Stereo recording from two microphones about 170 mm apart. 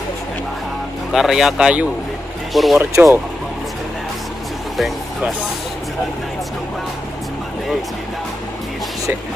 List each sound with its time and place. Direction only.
1.1 s speech: centre (ahead or behind)
2.8 s speech: 15° right (ahead or behind)
4.7 s speech: centre (ahead or behind)